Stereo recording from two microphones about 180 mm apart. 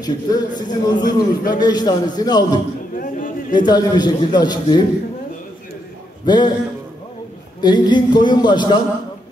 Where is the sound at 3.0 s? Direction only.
50° left (ahead or behind).